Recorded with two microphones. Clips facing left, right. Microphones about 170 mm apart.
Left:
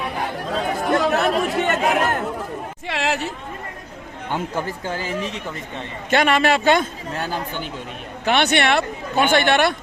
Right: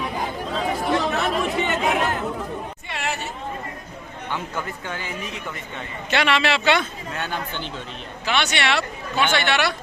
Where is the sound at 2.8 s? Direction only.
90° left.